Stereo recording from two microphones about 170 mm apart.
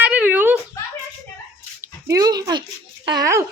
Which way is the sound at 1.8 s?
20° right (ahead or behind).